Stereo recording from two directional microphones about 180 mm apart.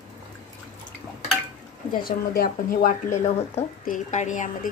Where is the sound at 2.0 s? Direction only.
55° left (ahead or behind).